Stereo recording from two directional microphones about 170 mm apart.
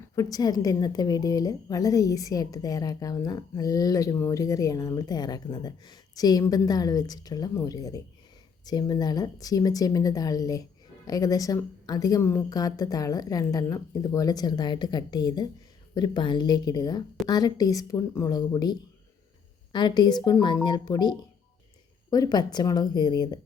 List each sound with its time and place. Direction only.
0.0 s a woman's voice: 20° left (ahead or behind)